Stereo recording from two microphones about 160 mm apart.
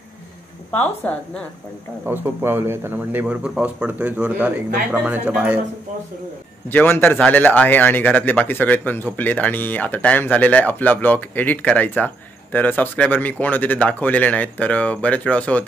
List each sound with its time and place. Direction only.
0.7 s speech: 10° left (ahead or behind)
2.0 s speech: 15° right (ahead or behind)
6.7 s speech: 15° left (ahead or behind)